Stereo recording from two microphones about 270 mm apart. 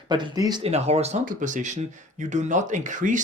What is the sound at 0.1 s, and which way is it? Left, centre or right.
Speech, centre.